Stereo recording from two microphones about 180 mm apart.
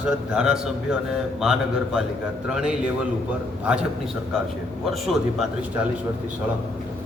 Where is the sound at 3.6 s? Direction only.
5° right (ahead or behind).